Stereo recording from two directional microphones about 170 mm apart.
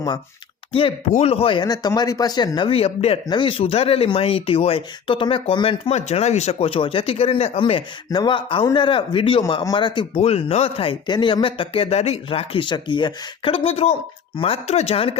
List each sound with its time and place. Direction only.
0.7 s speech: 30° left (ahead or behind)